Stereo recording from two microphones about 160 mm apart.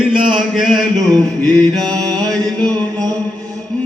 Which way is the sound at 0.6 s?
Centre (ahead or behind).